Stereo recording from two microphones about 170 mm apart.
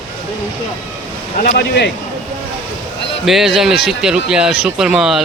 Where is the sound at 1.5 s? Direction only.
80° left.